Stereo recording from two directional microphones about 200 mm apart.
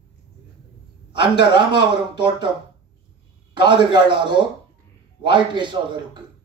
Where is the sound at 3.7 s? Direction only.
25° right (ahead or behind).